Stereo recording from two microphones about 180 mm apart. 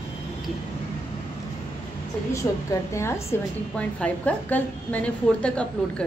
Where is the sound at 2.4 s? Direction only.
15° left (ahead or behind).